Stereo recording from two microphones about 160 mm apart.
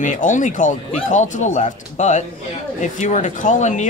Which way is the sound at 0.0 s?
55° left (ahead or behind).